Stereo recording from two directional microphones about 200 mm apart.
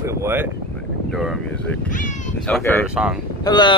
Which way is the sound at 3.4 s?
20° left (ahead or behind).